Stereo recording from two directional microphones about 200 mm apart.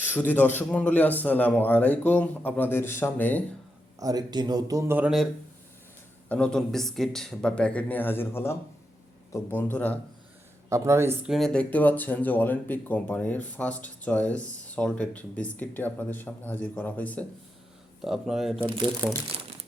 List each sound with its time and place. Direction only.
0.0 s a man's voice: 10° left (ahead or behind)
4.0 s a man's voice: 20° right (ahead or behind); by 10.0 s 10° left (ahead or behind)
10.7 s a man's voice: 15° right (ahead or behind)
18.6 s speech: 25° right (ahead or behind)